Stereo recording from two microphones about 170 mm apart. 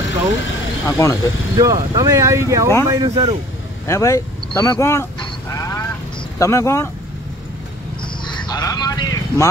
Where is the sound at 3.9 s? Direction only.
15° left (ahead or behind).